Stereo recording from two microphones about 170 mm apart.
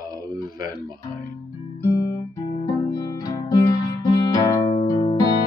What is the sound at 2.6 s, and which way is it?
Music, 20° left (ahead or behind).